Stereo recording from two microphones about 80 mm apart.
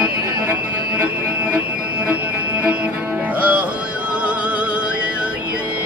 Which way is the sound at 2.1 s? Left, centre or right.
Centre.